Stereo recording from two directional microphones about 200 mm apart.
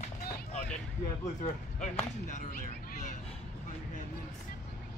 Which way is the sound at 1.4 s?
35° left (ahead or behind).